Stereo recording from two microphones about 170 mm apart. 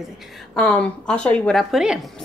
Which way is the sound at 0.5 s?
5° left (ahead or behind).